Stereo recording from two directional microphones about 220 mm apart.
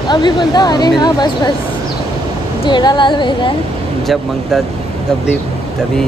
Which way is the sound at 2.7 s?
20° left (ahead or behind).